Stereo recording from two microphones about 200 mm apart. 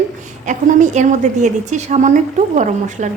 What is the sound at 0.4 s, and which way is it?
A woman's voice, 40° right (ahead or behind).